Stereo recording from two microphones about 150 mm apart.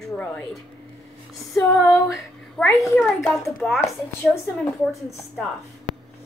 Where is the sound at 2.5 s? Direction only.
10° left (ahead or behind).